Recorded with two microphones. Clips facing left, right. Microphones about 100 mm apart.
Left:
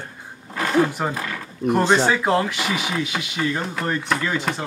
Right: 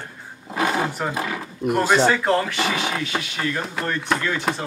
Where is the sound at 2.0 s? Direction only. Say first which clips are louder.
Even; 10° left (ahead or behind).